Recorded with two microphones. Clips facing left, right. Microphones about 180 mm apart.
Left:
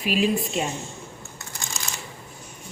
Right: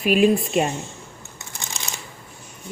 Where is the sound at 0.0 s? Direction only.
55° right (ahead or behind).